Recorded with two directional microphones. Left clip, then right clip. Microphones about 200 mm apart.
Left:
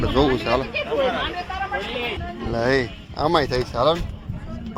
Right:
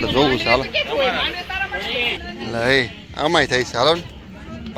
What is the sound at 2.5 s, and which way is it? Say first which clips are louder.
Speech: right 3 dB; 5° left (ahead or behind).